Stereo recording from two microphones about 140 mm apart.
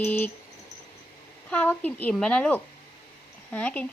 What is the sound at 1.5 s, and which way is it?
Speech, 10° left (ahead or behind).